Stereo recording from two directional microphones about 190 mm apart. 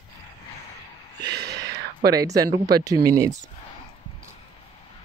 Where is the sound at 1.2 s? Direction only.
60° right (ahead or behind).